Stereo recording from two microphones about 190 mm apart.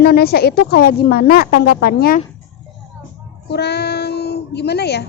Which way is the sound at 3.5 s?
60° left (ahead or behind).